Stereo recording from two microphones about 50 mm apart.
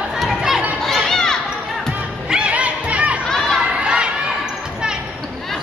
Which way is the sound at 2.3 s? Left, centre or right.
Right.